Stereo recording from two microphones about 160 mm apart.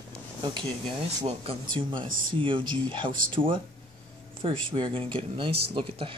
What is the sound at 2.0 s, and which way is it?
Speech, 60° right (ahead or behind).